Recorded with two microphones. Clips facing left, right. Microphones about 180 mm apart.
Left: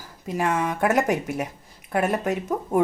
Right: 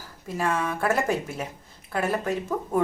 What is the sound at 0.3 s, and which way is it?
Speech, 20° left (ahead or behind).